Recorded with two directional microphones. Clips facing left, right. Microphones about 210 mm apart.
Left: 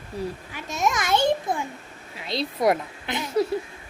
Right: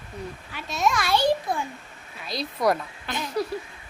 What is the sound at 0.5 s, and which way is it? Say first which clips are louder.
Speech: right 1 dB; 15° left (ahead or behind).